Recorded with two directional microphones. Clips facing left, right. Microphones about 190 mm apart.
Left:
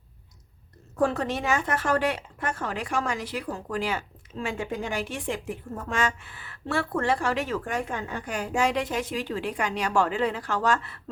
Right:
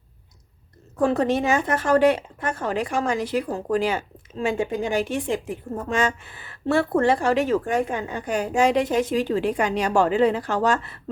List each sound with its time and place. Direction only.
1.2 s speech: 20° right (ahead or behind)